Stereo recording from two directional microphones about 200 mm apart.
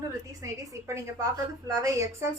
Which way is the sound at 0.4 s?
15° right (ahead or behind).